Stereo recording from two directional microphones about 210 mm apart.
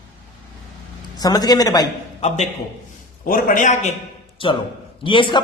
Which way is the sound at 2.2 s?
30° left (ahead or behind).